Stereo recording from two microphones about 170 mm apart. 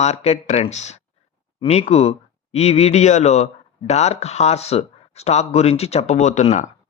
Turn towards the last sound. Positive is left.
turn(degrees=45)  # may be behind; listen again after turning